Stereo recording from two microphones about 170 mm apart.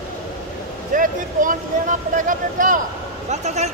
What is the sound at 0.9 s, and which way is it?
Speech, 55° right (ahead or behind).